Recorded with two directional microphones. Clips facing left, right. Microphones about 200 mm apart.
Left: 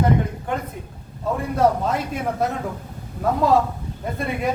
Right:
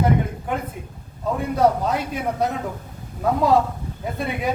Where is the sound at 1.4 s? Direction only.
Centre (ahead or behind).